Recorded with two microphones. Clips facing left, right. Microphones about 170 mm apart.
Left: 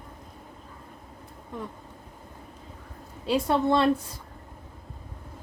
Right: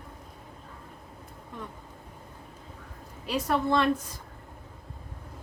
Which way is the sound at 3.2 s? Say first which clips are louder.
Left 4 dB; 30° left (ahead or behind).